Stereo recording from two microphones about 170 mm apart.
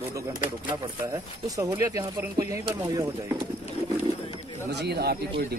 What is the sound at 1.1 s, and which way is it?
Speech, 20° right (ahead or behind).